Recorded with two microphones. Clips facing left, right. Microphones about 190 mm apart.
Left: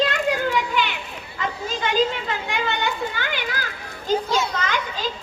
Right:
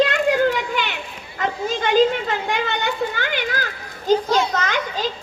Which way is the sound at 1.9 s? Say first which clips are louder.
Right 6 dB; 45° right (ahead or behind).